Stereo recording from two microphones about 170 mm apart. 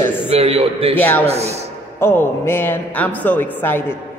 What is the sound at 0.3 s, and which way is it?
Speech, 35° right (ahead or behind).